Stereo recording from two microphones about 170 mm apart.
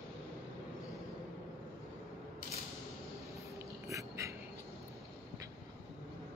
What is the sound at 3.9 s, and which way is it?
Wheeze, 20° right (ahead or behind).